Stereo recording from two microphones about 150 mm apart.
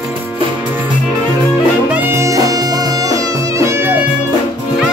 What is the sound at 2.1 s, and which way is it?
Music, 20° right (ahead or behind).